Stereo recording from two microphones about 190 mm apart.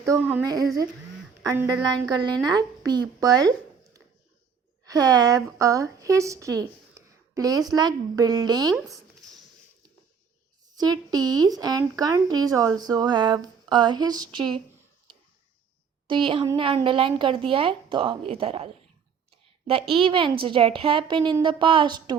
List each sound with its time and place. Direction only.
0.0 s speech: 10° right (ahead or behind)
1.5 s speech: 20° right (ahead or behind)
4.9 s speech: 20° right (ahead or behind)
10.8 s speech: 20° right (ahead or behind)
16.0 s speech: 25° right (ahead or behind)
20.0 s speech: 25° right (ahead or behind)